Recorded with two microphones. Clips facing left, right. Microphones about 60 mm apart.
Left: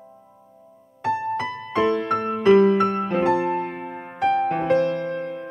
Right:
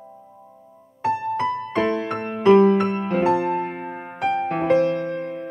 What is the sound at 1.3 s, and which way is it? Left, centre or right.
Music, right.